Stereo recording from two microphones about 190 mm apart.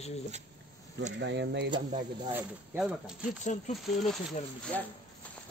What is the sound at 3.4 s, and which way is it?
Speech, 40° left (ahead or behind).